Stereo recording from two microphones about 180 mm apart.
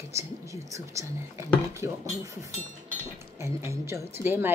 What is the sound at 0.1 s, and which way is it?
Speech, 15° right (ahead or behind).